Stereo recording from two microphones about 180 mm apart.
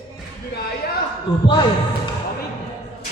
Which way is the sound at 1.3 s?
25° left (ahead or behind).